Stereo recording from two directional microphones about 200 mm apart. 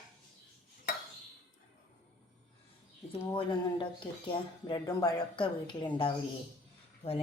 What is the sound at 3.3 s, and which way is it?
Speech, 25° left (ahead or behind).